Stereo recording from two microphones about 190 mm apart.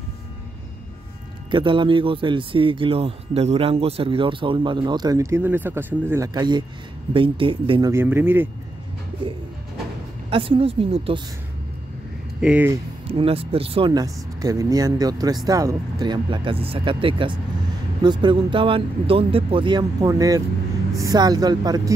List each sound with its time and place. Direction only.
1.5 s speech: 25° right (ahead or behind)
7.9 s speech: 10° right (ahead or behind)
10.3 s speech: 30° right (ahead or behind)
12.4 s speech: 5° right (ahead or behind)
13.0 s speech: 30° right (ahead or behind)